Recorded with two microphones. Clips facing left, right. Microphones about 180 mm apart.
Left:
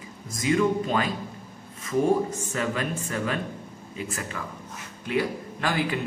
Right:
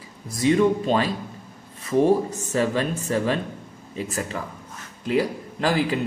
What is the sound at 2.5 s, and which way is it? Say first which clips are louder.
A man's voice: right 7 dB; 30° right (ahead or behind).